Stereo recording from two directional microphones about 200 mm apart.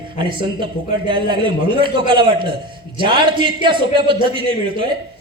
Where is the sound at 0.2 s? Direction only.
25° right (ahead or behind).